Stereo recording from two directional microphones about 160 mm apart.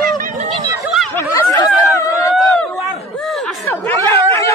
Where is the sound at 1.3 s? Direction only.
25° left (ahead or behind).